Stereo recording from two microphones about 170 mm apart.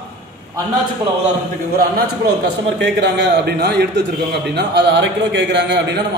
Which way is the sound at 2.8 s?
85° right.